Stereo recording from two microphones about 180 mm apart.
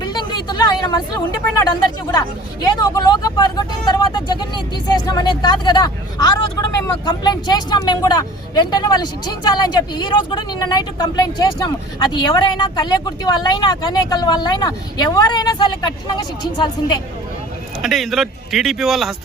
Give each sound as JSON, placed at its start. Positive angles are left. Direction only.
{"t": 0.0, "sound": "a sound", "side_deg": 25}
{"t": 2.1, "sound": "speech", "side_deg": 20}
{"t": 17.8, "sound": "speech", "side_deg": 0}